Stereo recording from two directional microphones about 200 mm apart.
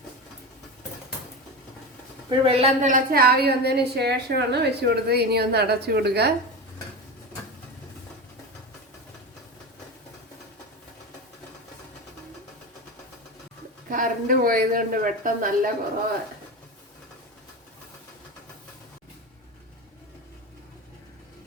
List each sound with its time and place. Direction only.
2.4 s a woman's voice: 30° right (ahead or behind); by 6.3 s 55° right (ahead or behind)
13.9 s a woman's voice: 45° right (ahead or behind)